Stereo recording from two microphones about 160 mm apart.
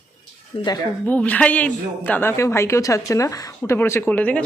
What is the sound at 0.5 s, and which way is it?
Speech, 25° left (ahead or behind).